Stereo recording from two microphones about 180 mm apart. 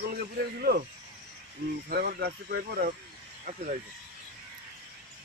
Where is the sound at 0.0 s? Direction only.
60° right (ahead or behind).